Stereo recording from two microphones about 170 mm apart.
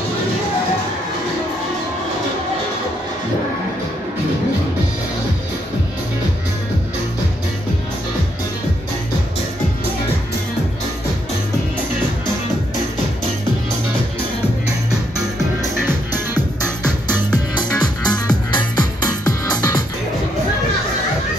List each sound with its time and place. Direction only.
17.6 s music: 25° left (ahead or behind)